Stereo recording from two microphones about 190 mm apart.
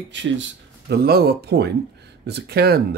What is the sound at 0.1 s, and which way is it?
Speech, 70° right (ahead or behind).